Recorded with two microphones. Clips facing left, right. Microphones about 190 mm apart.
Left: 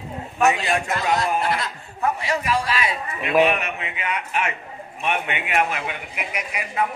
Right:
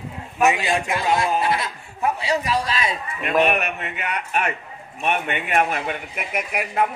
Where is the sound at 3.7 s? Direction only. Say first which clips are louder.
Even; 50° right (ahead or behind).